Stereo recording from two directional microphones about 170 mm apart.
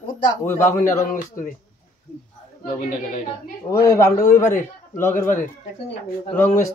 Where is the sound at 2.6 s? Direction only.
50° left (ahead or behind).